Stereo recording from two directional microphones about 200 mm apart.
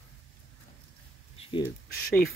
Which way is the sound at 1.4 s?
25° left (ahead or behind).